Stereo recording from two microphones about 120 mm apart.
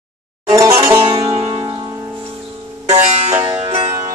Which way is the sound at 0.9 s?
50° right (ahead or behind).